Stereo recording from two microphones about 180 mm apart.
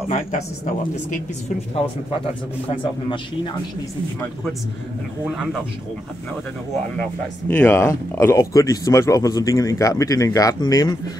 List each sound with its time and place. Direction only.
0.1 s speech: 40° left (ahead or behind)
2.7 s speech: 30° left (ahead or behind)
5.2 s speech: 5° right (ahead or behind)
7.0 s speech: 10° left (ahead or behind)